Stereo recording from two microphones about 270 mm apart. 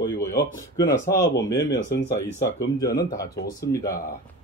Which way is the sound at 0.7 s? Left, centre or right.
Centre.